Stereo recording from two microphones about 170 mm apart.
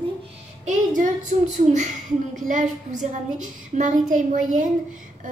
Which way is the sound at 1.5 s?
45° right (ahead or behind).